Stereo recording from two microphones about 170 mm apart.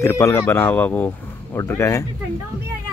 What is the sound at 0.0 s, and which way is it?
Speech, 15° left (ahead or behind).